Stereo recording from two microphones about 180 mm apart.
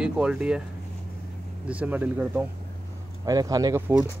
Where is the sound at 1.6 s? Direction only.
10° right (ahead or behind).